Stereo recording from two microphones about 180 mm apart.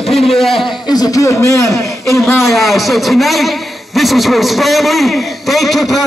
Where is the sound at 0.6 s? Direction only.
20° left (ahead or behind).